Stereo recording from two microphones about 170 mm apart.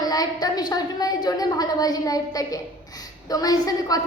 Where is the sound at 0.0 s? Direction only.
20° left (ahead or behind).